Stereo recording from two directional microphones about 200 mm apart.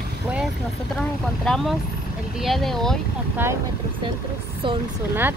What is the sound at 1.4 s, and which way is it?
Speech, centre (ahead or behind).